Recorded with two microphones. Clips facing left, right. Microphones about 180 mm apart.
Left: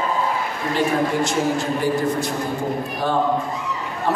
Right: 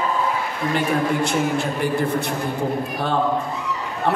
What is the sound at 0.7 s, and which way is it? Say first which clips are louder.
A man's voice: left 1 dB; 60° right (ahead or behind).